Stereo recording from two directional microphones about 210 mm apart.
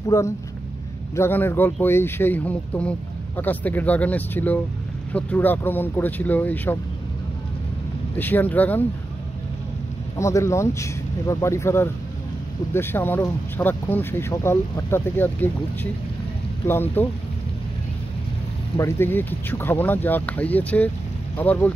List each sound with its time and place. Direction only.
0.1 s speech: 15° left (ahead or behind)
8.2 s speech: 10° left (ahead or behind)
10.1 s speech: 15° left (ahead or behind)
18.8 s speech: 10° left (ahead or behind)